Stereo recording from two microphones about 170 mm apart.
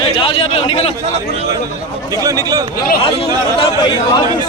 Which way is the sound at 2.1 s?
20° right (ahead or behind).